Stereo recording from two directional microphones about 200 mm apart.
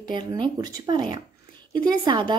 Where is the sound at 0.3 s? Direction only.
20° right (ahead or behind).